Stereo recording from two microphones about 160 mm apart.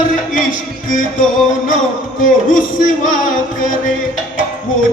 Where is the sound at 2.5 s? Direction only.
55° left (ahead or behind).